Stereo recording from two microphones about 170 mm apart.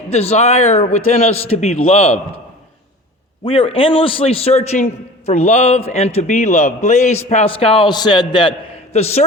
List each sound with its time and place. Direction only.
0.1 s a man's voice: 40° left (ahead or behind)
3.4 s a man's voice: 30° left (ahead or behind)